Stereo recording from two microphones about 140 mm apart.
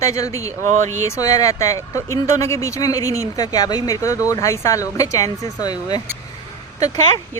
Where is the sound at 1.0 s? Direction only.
25° left (ahead or behind).